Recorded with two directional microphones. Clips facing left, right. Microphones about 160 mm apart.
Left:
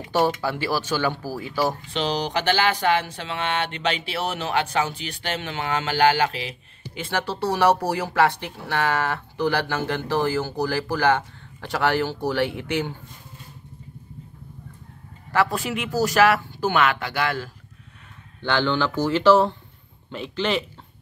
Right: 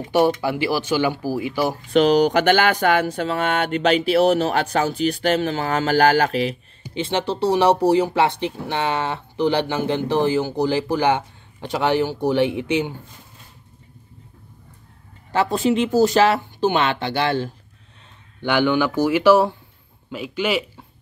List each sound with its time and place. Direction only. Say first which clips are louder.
0.4 s speech: right 4 dB; 15° right (ahead or behind)
1.9 s speech: right 10 dB; 50° right (ahead or behind)
7.0 s speech: right 5 dB; 20° right (ahead or behind)
15.3 s speech: right 5 dB; 25° right (ahead or behind)
18.4 s speech: right 4 dB; 15° right (ahead or behind)